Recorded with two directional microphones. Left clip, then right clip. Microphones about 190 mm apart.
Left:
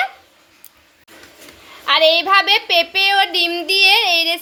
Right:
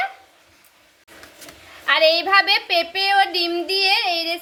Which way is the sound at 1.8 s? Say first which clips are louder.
Left 3 dB; 30° left (ahead or behind).